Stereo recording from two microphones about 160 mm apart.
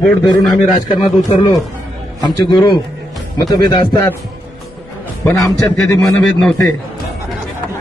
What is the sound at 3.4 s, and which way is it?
Speech, 25° left (ahead or behind).